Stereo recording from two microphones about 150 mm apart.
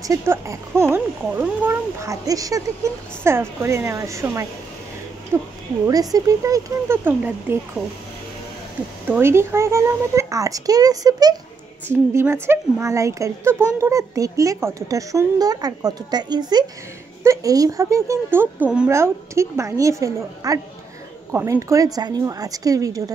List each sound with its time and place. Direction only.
0.0 s a child's voice: 20° right (ahead or behind)
9.0 s a child's voice: 15° right (ahead or behind)